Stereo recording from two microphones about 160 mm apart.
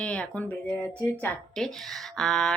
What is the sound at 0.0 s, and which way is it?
Speech, 5° left (ahead or behind).